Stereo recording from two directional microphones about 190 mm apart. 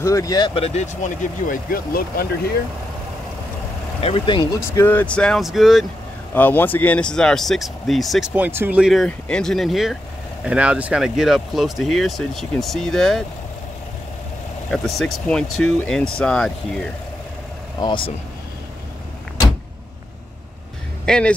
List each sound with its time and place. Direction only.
0.0 s speech: 15° left (ahead or behind)
0.7 s speech: 40° left (ahead or behind)
4.0 s speech: 25° left (ahead or behind)
4.7 s speech: 10° left (ahead or behind)
6.3 s speech: 10° left (ahead or behind)
14.7 s speech: centre (ahead or behind)
17.7 s speech: 25° left (ahead or behind)
21.0 s a sound: 5° left (ahead or behind)